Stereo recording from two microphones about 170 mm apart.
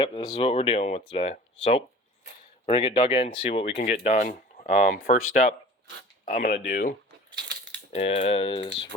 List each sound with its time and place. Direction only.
0.0 s speech: 25° left (ahead or behind)
3.8 s speech: 60° left (ahead or behind)
7.4 s coin: 90° right
7.9 s speech: 35° left (ahead or behind)